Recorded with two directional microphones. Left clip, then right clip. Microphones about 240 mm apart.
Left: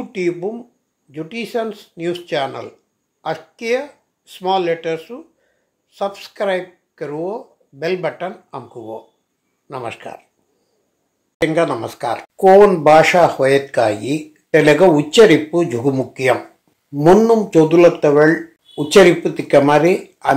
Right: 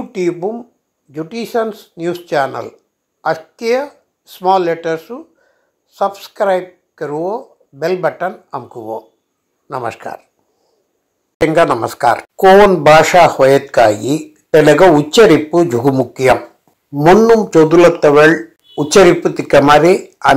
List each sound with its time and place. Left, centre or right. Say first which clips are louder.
0.1 s speech: right 4 dB; centre
3.2 s a sound: right 7 dB; centre
4.4 s speech: right 5 dB; centre
11.4 s a man's voice: right 6 dB; centre
17.8 s speech: right 4 dB; centre
18.9 s a man's voice: right 2 dB; centre